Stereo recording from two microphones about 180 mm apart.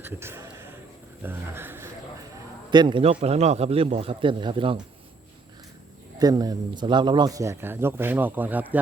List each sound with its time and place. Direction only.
0.0 s a sound: 15° right (ahead or behind)
1.2 s speech: 10° right (ahead or behind)
2.6 s a man's voice: 25° right (ahead or behind)
6.1 s speech: 20° right (ahead or behind)